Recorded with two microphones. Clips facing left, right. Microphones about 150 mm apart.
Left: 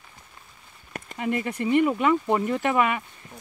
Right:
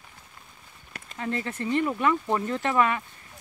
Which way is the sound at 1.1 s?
15° left (ahead or behind).